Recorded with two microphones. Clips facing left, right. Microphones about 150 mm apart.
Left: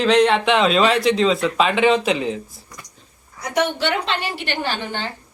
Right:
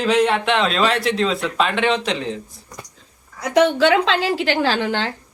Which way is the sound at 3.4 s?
90° right.